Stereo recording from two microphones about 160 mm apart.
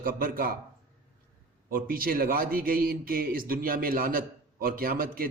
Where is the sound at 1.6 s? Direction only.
65° right (ahead or behind).